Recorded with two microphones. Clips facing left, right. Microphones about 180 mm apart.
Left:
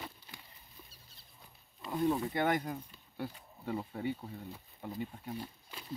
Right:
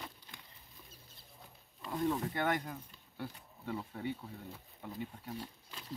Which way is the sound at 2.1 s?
15° left (ahead or behind).